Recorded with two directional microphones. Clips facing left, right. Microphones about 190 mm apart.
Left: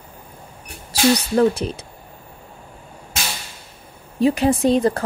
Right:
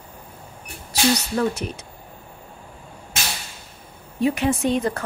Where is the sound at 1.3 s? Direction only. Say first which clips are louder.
Left 6 dB; 30° left (ahead or behind).